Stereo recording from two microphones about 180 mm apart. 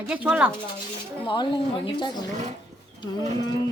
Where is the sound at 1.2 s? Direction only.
30° left (ahead or behind).